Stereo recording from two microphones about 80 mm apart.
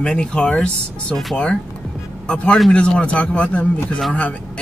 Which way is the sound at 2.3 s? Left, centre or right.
Centre.